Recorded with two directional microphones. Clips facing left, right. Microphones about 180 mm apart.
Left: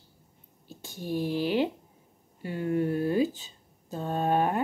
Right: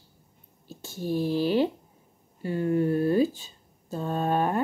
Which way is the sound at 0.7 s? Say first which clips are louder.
Right 4 dB; 15° left (ahead or behind).